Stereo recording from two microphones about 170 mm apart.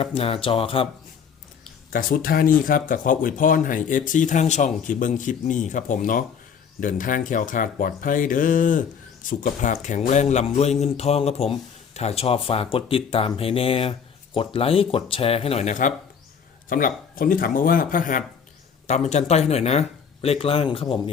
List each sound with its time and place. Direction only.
0.0 s speech: 35° left (ahead or behind)
1.9 s speech: 55° left (ahead or behind)
18.9 s speech: 40° left (ahead or behind)